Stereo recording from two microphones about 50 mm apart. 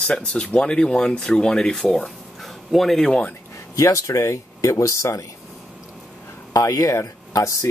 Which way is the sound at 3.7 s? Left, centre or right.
Left.